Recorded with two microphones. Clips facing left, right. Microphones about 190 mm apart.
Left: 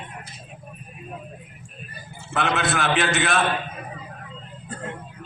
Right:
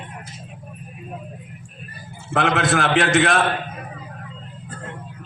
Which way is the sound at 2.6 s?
90° right.